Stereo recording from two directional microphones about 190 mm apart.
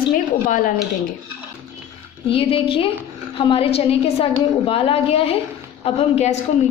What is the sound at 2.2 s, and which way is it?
A woman's voice, 30° left (ahead or behind).